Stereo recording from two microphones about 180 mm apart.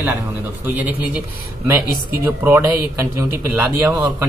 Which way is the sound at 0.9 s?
10° right (ahead or behind).